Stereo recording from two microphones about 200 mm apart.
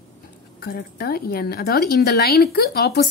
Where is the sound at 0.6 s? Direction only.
50° left (ahead or behind).